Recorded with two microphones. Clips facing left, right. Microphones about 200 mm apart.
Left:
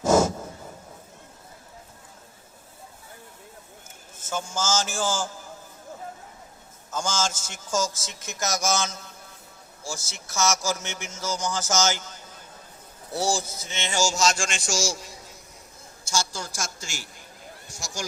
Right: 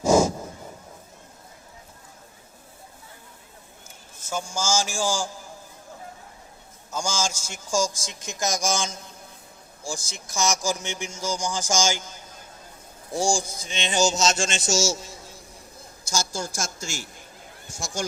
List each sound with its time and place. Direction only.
0.0 s a sound: 10° right (ahead or behind)
4.3 s a man's voice: 10° right (ahead or behind)
6.9 s a man's voice: 10° right (ahead or behind); by 15.4 s 25° right (ahead or behind)
16.0 s a woman's voice: 45° right (ahead or behind)